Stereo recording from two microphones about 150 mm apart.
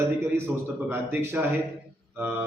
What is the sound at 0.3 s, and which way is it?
A man's voice, 15° right (ahead or behind).